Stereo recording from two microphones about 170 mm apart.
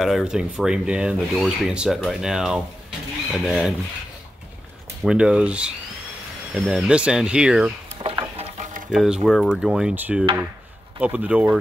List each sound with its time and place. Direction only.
0.0 s speech: 5° right (ahead or behind)
5.0 s speech: 5° right (ahead or behind)
8.0 s a sound: 35° right (ahead or behind)
8.9 s speech: 5° right (ahead or behind)